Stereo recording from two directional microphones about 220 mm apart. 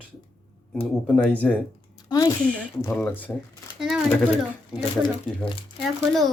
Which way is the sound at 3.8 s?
5° right (ahead or behind).